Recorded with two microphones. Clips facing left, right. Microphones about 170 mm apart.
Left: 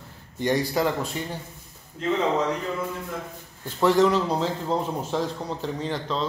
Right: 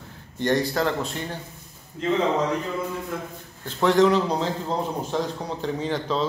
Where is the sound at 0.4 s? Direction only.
10° left (ahead or behind).